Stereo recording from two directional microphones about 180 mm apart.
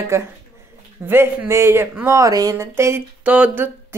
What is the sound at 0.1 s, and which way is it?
Speech, 15° right (ahead or behind).